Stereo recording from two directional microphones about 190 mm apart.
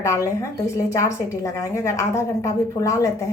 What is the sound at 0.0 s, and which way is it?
A woman's voice, 15° left (ahead or behind).